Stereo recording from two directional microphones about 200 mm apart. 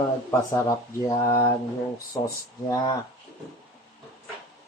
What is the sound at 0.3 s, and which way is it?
Speech, 15° left (ahead or behind).